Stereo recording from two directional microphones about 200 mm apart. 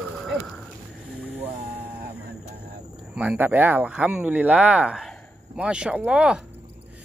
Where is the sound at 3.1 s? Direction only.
5° right (ahead or behind).